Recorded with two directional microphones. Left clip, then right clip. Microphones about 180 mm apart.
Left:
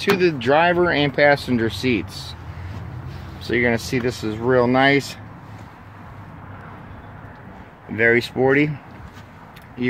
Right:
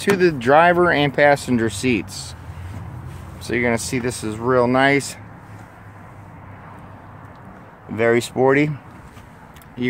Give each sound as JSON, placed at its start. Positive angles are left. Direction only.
{"t": 0.0, "sound": "speech", "side_deg": -25}
{"t": 3.4, "sound": "speech", "side_deg": -5}
{"t": 7.9, "sound": "speech", "side_deg": -20}